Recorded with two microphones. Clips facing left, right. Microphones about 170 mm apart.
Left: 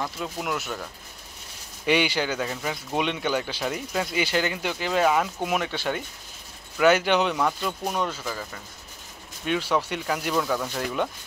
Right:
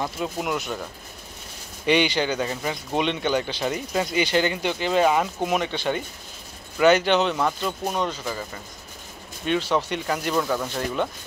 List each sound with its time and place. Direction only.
0.2 s speech: 5° right (ahead or behind)
1.9 s speech: 5° left (ahead or behind)
9.5 s speech: 10° left (ahead or behind)